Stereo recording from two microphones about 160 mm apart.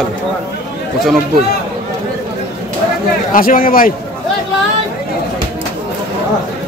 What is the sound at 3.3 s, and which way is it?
Speech, 60° left (ahead or behind).